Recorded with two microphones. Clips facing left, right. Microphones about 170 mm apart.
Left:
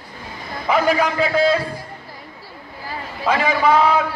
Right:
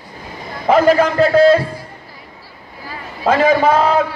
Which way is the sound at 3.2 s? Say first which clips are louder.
Right 5 dB; 40° right (ahead or behind).